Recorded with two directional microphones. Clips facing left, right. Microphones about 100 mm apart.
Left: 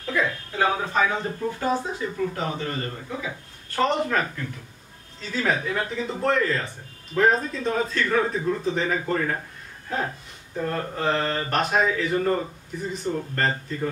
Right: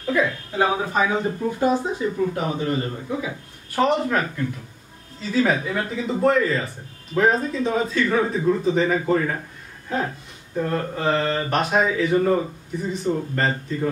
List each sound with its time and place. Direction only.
0.0 s speech: 5° right (ahead or behind)
5.3 s speech: 5° right (ahead or behind)
10.7 s speech: centre (ahead or behind)